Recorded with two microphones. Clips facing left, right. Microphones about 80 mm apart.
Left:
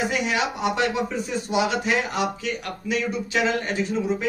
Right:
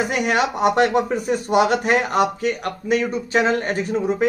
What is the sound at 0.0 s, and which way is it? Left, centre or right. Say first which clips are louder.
A man's voice: right 4 dB; right.